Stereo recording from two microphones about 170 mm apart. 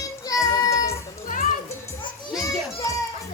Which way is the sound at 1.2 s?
55° left (ahead or behind).